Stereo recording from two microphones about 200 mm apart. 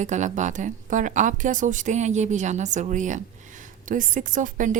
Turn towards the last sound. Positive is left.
turn(degrees=-40)  # may be behind; listen again after turning